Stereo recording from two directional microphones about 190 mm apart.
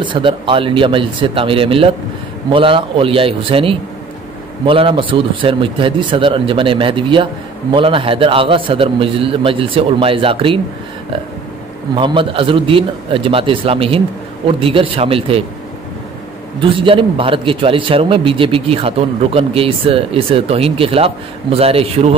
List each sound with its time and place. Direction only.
0.0 s a man's voice: 25° right (ahead or behind)
11.9 s a man's voice: 25° right (ahead or behind)
16.7 s a man's voice: 25° right (ahead or behind)